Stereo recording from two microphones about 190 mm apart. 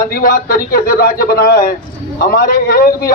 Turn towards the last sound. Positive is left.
turn(degrees=50)  # may be behind; listen again after turning